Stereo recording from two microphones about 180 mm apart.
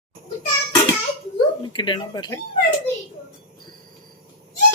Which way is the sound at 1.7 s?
25° left (ahead or behind).